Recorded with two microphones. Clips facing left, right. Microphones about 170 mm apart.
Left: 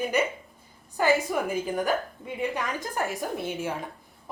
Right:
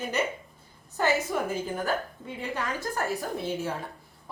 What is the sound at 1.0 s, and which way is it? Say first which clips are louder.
A woman's voice: left 2 dB; 10° left (ahead or behind).